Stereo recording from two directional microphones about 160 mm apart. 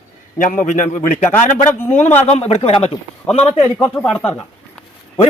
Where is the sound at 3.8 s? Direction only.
10° left (ahead or behind).